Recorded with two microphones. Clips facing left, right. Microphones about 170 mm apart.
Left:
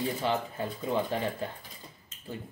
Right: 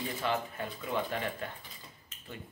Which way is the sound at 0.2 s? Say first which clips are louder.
Left 3 dB; 30° left (ahead or behind).